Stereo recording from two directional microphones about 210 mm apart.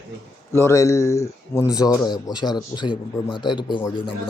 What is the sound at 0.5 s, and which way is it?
A man's voice, 15° left (ahead or behind).